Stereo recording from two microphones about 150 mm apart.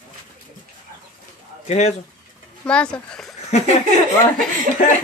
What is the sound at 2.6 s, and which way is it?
Speech, 5° left (ahead or behind).